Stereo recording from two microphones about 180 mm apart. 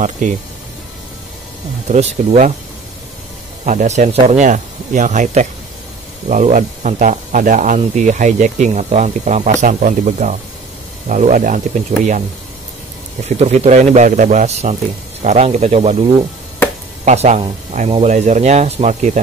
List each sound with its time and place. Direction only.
0.0 s speech: 45° right (ahead or behind)
1.9 s speech: 40° right (ahead or behind)
3.6 s speech: 40° right (ahead or behind)
13.2 s speech: 35° right (ahead or behind)